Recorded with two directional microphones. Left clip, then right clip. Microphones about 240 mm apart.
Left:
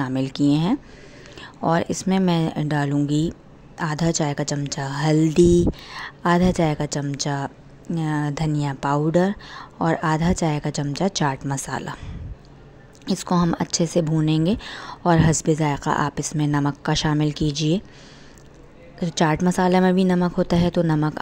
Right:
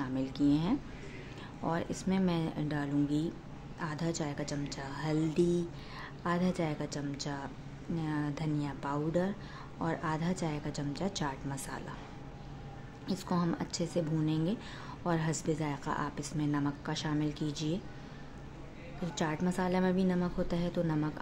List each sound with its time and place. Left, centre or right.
0.0 s speech: left
13.0 s speech: left
18.9 s speech: left